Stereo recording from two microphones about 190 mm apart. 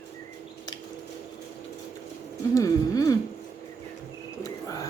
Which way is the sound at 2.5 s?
15° left (ahead or behind).